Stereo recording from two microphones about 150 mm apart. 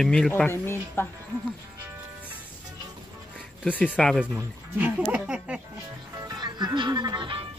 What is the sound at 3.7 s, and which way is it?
Speech, 10° left (ahead or behind).